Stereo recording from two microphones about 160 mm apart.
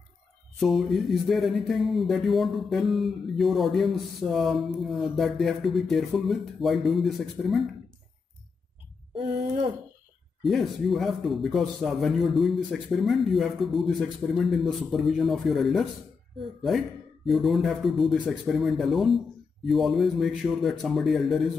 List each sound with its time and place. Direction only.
0.6 s speech: centre (ahead or behind)
10.4 s speech: centre (ahead or behind)
17.3 s speech: centre (ahead or behind)